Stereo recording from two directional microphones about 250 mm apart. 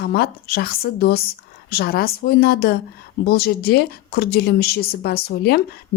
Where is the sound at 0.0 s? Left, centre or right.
Left.